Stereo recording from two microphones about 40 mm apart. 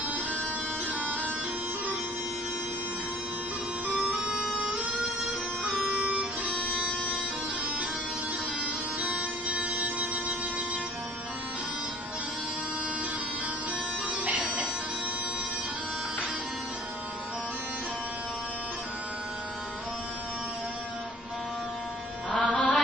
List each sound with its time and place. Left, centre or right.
4.1 s music: right
6.5 s music: left
9.1 s music: right
14.2 s music: right
22.3 s music: left